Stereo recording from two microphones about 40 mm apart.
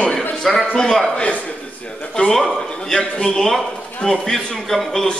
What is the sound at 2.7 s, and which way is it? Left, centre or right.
Speech, left.